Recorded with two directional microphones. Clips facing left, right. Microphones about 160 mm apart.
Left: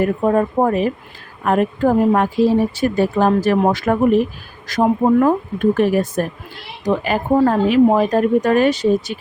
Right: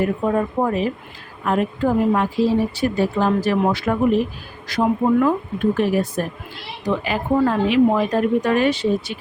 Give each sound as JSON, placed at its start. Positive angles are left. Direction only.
{"t": 0.0, "sound": "speech", "side_deg": 50}